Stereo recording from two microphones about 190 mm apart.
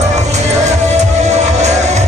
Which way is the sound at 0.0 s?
35° right (ahead or behind).